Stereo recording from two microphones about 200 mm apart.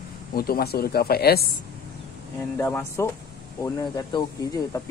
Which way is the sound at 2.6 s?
15° left (ahead or behind).